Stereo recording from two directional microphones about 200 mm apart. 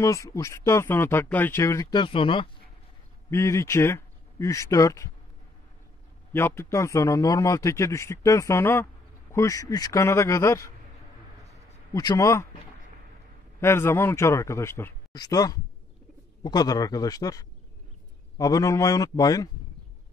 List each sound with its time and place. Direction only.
0.0 s speech: 15° left (ahead or behind)
3.3 s speech: 15° left (ahead or behind)
6.3 s speech: 10° left (ahead or behind)
11.9 s speech: 20° left (ahead or behind)
13.6 s speech: 10° left (ahead or behind)